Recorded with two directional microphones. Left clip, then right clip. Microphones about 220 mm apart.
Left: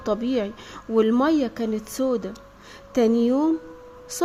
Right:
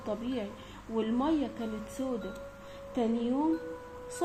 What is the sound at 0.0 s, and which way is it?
A woman's voice, 60° left (ahead or behind).